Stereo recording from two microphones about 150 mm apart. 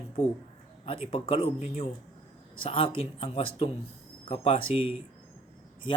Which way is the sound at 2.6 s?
35° left (ahead or behind).